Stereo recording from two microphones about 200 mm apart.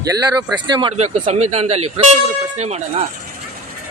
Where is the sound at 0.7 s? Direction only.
20° right (ahead or behind).